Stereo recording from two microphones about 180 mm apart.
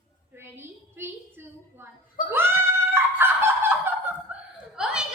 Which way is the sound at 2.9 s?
15° right (ahead or behind).